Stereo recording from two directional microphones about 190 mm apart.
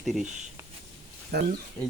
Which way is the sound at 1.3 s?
55° right (ahead or behind).